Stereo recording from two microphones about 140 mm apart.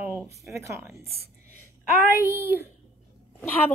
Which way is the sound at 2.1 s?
15° right (ahead or behind).